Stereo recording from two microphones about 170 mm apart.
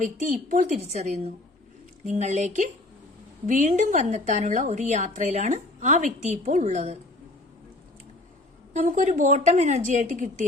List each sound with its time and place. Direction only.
0.4 s a woman's voice: 45° right (ahead or behind)
8.7 s a woman's voice: 45° right (ahead or behind)